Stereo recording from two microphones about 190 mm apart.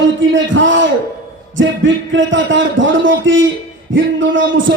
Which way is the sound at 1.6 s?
80° right.